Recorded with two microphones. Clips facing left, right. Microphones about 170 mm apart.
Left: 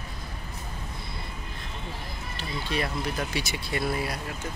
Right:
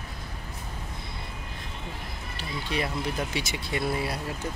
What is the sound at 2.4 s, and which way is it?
Speech, 15° right (ahead or behind).